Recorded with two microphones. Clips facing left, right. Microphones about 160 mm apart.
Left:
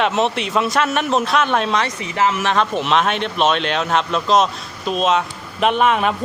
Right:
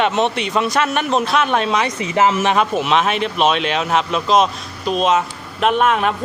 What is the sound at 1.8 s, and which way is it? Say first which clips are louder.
Speech: right 3 dB; 20° right (ahead or behind).